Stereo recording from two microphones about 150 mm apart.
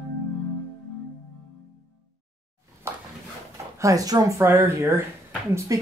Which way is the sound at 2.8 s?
15° right (ahead or behind).